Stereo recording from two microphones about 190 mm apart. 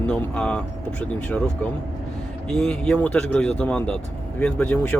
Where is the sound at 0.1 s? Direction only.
5° left (ahead or behind).